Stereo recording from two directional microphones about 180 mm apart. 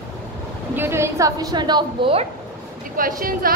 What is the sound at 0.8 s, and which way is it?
A woman's voice, 15° right (ahead or behind).